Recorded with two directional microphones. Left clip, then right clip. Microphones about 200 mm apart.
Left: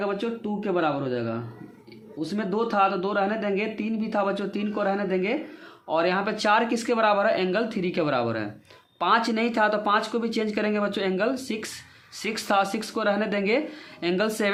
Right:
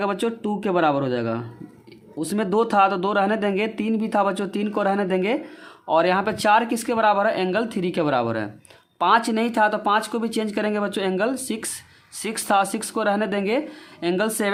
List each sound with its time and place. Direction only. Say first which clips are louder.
0.0 s speech: right 4 dB; 40° right (ahead or behind)